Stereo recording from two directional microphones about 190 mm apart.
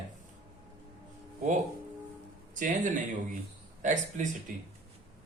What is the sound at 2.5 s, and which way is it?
Speech, 45° right (ahead or behind).